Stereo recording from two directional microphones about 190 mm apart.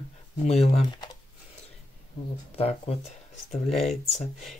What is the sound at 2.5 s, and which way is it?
Speech, 30° left (ahead or behind).